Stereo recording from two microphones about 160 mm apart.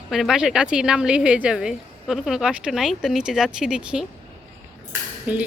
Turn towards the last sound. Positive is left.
turn(degrees=-10)  # may be behind; listen again after turning